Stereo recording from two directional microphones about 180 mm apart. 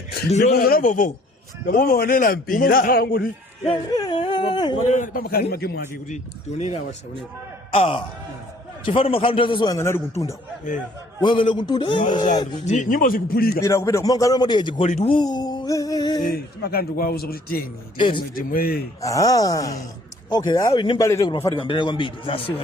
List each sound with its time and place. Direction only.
0.3 s speech: 40° left (ahead or behind)
0.5 s a man's voice: 55° left (ahead or behind)
3.9 s speech: 25° left (ahead or behind)
4.8 s a man's voice: 40° left (ahead or behind); by 6.0 s 60° left (ahead or behind)
6.6 s a man's voice: 35° left (ahead or behind); by 10.3 s 15° left (ahead or behind)
11.2 s a man's voice: 25° left (ahead or behind)
12.6 s a man's voice: 45° left (ahead or behind)
13.6 s a man's voice: 15° left (ahead or behind)
14.8 s speech: 40° left (ahead or behind)
15.1 s a man's voice: 25° left (ahead or behind)
16.3 s a man's voice: 55° left (ahead or behind)
17.9 s a man's voice: 25° left (ahead or behind)
18.3 s a man's voice: 55° left (ahead or behind)
19.0 s a man's voice: 20° left (ahead or behind)